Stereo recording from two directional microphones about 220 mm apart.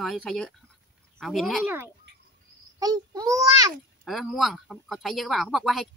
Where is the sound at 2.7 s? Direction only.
15° right (ahead or behind).